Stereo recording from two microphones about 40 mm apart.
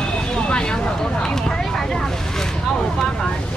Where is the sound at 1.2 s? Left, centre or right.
Centre.